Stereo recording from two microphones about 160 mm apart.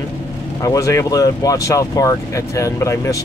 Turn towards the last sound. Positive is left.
turn(degrees=20)  # may be behind; listen again after turning